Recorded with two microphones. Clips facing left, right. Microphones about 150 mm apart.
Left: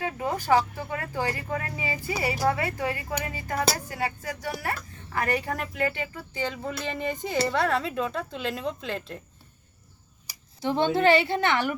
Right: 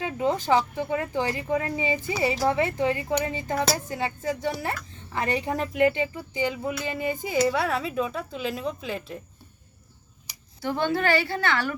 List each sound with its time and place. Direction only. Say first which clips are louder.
0.0 s speech: right 4 dB; 20° right (ahead or behind); by 9.1 s 5° right (ahead or behind)
10.6 s a woman's voice: left 2 dB; 20° left (ahead or behind)